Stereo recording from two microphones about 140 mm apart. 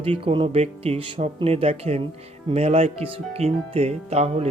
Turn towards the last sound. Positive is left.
turn(degrees=-50)  # may be behind; listen again after turning